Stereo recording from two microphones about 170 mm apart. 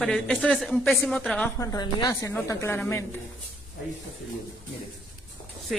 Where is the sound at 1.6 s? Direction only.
20° left (ahead or behind).